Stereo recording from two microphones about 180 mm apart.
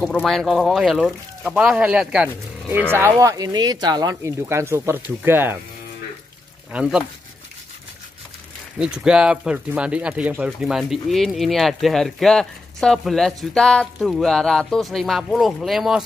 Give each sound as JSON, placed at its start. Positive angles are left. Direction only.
{"t": 0.0, "sound": "speech", "side_deg": 0}
{"t": 6.7, "sound": "speech", "side_deg": -5}
{"t": 8.7, "sound": "speech", "side_deg": -5}